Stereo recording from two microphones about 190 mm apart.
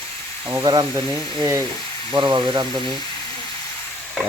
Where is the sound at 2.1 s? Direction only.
25° right (ahead or behind).